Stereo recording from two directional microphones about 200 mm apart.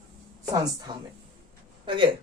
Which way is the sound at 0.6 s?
20° right (ahead or behind).